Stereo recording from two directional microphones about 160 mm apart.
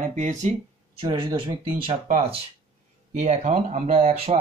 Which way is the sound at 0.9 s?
35° right (ahead or behind).